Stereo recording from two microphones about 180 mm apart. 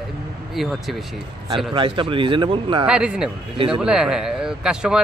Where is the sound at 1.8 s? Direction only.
30° right (ahead or behind).